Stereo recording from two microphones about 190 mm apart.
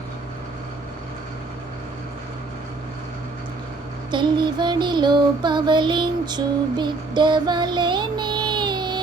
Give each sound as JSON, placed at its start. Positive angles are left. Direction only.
{"t": 4.1, "sound": "child singing", "side_deg": -25}